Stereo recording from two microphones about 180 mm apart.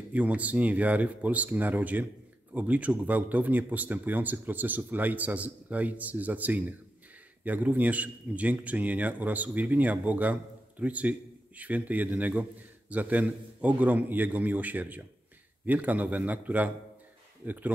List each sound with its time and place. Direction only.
0.1 s a man's voice: 10° right (ahead or behind)